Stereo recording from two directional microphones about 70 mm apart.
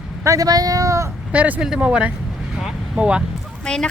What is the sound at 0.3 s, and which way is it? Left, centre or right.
Speech, right.